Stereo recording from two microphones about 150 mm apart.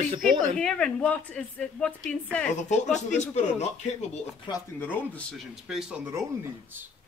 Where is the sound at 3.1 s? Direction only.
50° left (ahead or behind).